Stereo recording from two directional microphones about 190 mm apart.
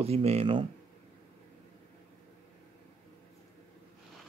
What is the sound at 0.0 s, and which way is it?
Speech, 35° right (ahead or behind).